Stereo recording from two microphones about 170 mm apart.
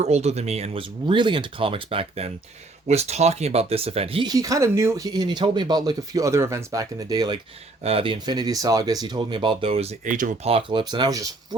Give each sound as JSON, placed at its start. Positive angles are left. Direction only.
{"t": 0.0, "sound": "speech", "side_deg": -40}
{"t": 10.5, "sound": "speech", "side_deg": -30}